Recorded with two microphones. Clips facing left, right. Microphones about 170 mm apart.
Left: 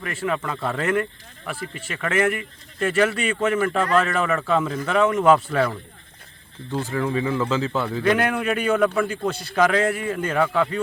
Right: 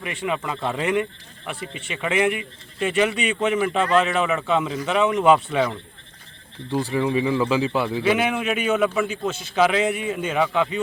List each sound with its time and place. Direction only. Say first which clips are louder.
0.3 s a man's voice: even; 15° right (ahead or behind)
3.8 s speech: right 2 dB; 25° right (ahead or behind)
4.0 s a man's voice: right 1 dB; 10° right (ahead or behind)
6.7 s a man's voice: right 2 dB; 15° right (ahead or behind)